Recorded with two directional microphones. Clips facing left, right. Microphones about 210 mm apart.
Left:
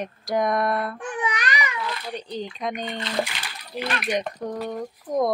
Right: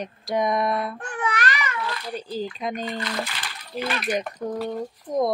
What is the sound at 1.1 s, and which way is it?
Babbling, 15° left (ahead or behind).